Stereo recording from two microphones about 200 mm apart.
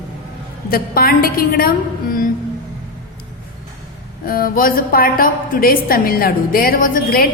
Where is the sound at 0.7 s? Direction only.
50° left (ahead or behind).